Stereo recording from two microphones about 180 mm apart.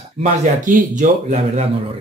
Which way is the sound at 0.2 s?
45° right (ahead or behind).